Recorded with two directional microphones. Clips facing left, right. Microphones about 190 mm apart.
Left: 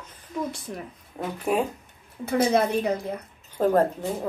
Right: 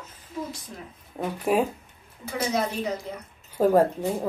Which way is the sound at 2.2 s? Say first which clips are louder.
Left 5 dB; 60° left (ahead or behind).